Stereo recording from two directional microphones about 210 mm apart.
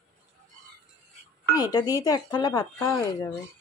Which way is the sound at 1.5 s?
20° left (ahead or behind).